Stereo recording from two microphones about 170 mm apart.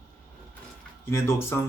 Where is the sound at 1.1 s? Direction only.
15° left (ahead or behind).